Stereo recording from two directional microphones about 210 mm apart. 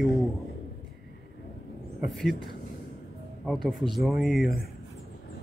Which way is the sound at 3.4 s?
Centre (ahead or behind).